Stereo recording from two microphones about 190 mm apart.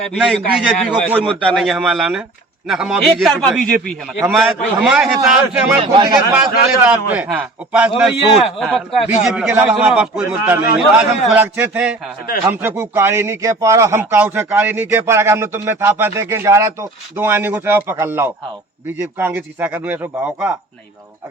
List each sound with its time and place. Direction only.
0.0 s a man's voice: centre (ahead or behind)
5.8 s a man's voice: 25° right (ahead or behind)
6.1 s a man's voice: centre (ahead or behind)